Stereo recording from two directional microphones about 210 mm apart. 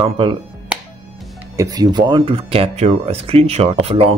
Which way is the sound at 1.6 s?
15° right (ahead or behind).